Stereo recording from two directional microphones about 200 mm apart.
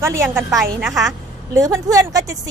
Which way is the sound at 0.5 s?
Centre (ahead or behind).